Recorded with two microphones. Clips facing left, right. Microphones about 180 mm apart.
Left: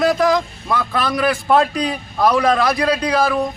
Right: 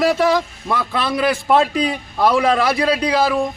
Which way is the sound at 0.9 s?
25° right (ahead or behind).